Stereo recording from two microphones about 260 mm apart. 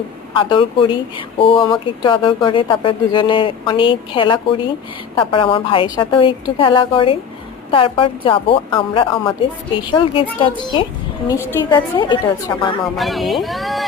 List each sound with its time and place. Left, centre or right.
0.3 s a woman's voice: centre
13.0 s speech: centre